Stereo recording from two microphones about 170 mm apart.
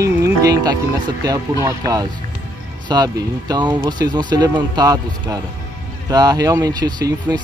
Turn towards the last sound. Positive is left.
turn(degrees=-25)  # may be behind; listen again after turning